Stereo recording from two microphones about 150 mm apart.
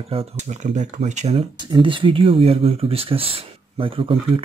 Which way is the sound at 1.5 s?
30° right (ahead or behind).